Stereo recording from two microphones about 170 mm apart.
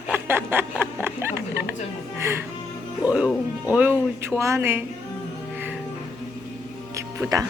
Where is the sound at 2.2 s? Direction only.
15° right (ahead or behind).